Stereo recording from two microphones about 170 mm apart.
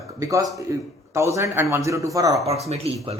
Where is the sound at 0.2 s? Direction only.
20° right (ahead or behind).